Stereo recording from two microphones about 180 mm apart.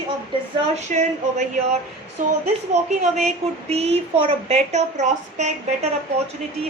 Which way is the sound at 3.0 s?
40° right (ahead or behind).